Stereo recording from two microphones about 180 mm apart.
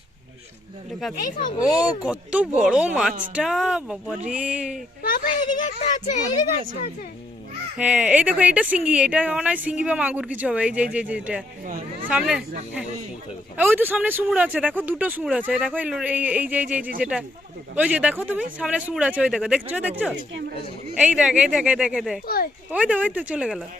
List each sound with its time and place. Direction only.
1.2 s speech: 45° left (ahead or behind)
1.6 s speech: 5° right (ahead or behind)
5.0 s a child's voice: 50° left (ahead or behind)
7.8 s speech: 5° right (ahead or behind)
13.6 s speech: 10° right (ahead or behind)
20.9 s speech: 5° right (ahead or behind)